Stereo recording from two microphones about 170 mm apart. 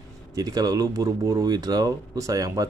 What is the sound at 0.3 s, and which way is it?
A man's voice, 20° right (ahead or behind).